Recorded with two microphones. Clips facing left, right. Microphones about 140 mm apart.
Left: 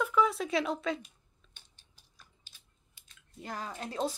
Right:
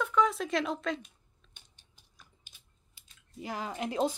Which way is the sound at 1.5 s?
15° right (ahead or behind).